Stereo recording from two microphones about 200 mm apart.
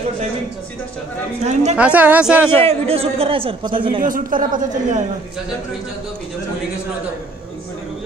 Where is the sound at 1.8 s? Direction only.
5° right (ahead or behind).